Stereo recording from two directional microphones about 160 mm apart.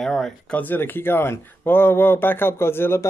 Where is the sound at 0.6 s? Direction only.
10° left (ahead or behind).